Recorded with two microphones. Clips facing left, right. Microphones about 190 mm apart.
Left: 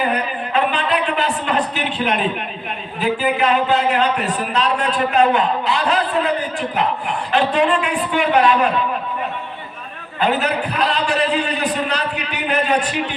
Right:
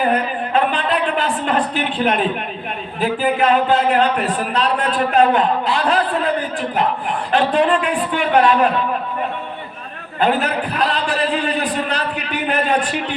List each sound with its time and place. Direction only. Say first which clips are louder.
0.0 s a sound: right 3 dB; 50° right (ahead or behind)
3.0 s a man's voice: right 1 dB; 45° right (ahead or behind)
10.2 s a man's voice: right 1 dB; 50° right (ahead or behind)